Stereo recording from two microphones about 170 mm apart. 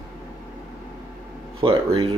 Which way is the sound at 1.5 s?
30° right (ahead or behind).